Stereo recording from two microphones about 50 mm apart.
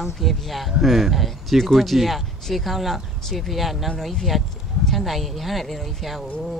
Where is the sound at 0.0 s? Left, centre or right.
Centre.